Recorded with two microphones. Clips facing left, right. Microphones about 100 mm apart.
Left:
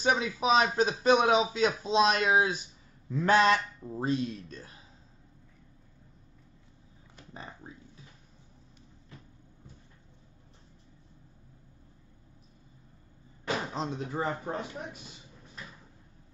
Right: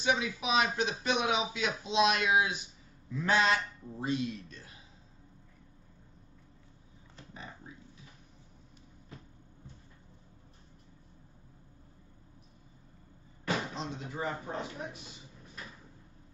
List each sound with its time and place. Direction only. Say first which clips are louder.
0.0 s speech: left 4 dB; 40° left (ahead or behind)
3.1 s speech: left 5 dB; 45° left (ahead or behind)
13.7 s speech: left 5 dB; 45° left (ahead or behind)